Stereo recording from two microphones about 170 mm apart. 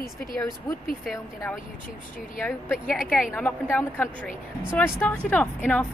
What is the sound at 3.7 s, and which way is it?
Speech, 10° left (ahead or behind).